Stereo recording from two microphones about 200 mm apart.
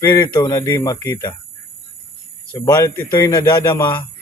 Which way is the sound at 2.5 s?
15° left (ahead or behind).